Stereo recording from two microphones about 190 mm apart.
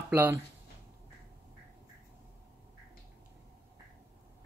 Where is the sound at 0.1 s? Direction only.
10° right (ahead or behind).